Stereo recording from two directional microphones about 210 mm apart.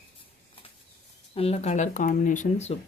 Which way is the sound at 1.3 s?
30° left (ahead or behind).